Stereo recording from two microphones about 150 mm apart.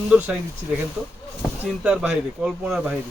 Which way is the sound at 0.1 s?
10° right (ahead or behind).